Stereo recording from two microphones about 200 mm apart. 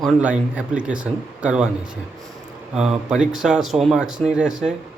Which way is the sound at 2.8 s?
5° right (ahead or behind).